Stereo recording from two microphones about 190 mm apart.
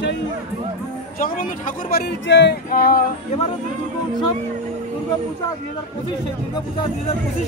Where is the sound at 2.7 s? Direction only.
50° left (ahead or behind).